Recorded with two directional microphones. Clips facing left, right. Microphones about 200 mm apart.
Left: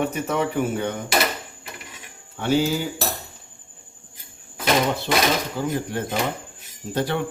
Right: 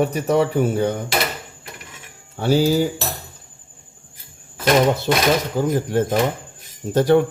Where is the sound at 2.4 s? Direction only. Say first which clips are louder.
Right 4 dB; 35° right (ahead or behind).